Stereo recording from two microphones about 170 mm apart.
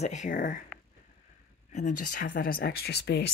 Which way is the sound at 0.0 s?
45° left (ahead or behind).